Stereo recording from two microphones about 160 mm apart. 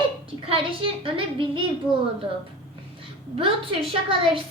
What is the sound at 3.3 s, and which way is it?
Speech, 35° right (ahead or behind).